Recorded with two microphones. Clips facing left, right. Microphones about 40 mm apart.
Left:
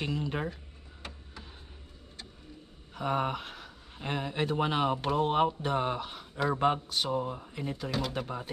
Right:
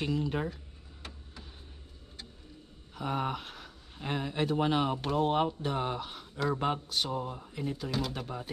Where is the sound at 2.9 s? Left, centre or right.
Centre.